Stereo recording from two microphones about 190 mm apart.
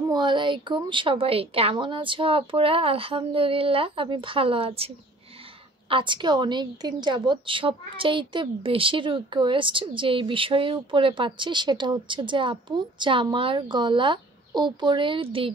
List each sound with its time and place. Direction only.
0.1 s a woman's voice: 25° right (ahead or behind)